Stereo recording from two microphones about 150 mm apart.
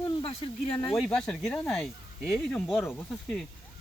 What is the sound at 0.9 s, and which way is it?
Speech, 5° left (ahead or behind).